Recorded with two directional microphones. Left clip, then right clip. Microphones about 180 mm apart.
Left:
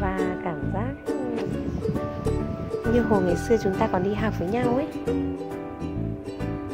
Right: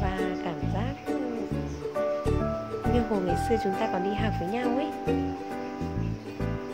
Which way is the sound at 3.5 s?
15° left (ahead or behind).